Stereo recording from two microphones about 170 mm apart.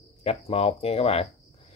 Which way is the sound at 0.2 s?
35° left (ahead or behind).